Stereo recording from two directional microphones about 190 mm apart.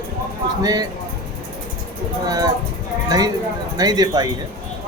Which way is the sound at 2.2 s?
20° right (ahead or behind).